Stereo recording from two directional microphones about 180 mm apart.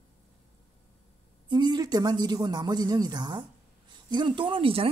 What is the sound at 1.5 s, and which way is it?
A woman's voice, 25° right (ahead or behind).